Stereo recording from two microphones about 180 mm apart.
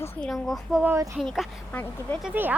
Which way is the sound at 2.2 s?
10° right (ahead or behind).